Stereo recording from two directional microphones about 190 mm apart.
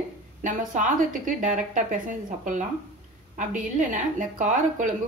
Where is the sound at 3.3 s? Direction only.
40° right (ahead or behind).